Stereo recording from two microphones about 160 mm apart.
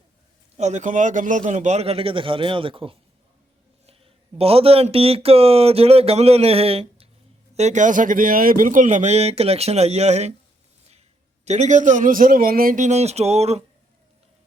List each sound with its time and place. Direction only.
0.5 s speech: 45° right (ahead or behind)
11.4 s speech: 45° right (ahead or behind)